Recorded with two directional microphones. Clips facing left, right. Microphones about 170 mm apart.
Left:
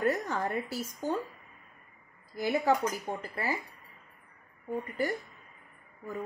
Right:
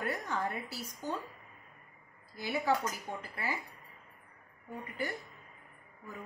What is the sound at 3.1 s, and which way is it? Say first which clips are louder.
Speech: left 5 dB; 40° left (ahead or behind).